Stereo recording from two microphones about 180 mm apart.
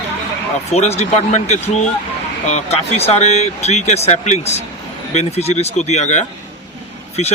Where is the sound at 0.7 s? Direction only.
35° left (ahead or behind).